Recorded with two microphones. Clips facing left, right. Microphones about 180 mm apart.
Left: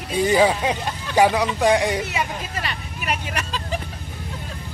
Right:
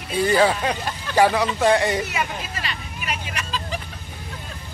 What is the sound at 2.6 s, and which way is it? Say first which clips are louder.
Vehicle: left 2 dB; 55° left (ahead or behind).